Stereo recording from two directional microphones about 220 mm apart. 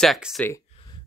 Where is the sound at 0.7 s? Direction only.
20° left (ahead or behind).